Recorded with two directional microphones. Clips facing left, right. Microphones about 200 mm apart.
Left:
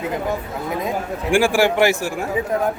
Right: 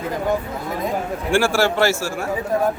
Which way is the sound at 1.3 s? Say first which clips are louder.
Left 2 dB; 15° left (ahead or behind).